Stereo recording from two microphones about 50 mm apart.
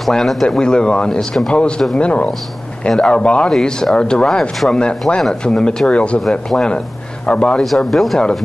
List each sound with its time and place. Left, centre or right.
0.0 s speech: centre; by 3.4 s left
3.4 s speech: centre
7.6 s speech: centre